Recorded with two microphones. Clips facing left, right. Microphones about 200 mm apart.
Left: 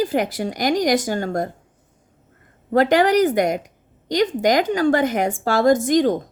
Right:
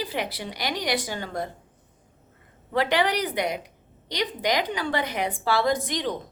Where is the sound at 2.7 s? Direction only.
45° left (ahead or behind).